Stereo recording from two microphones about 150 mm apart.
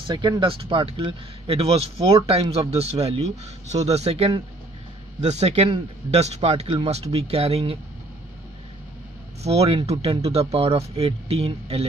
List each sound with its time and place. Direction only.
0.0 s a man's voice: 30° right (ahead or behind)
9.4 s speech: 45° right (ahead or behind)